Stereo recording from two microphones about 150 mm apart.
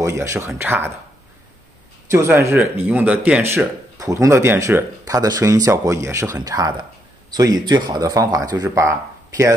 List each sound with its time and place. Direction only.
0.0 s speech: 20° right (ahead or behind)
2.0 s speech: 15° right (ahead or behind)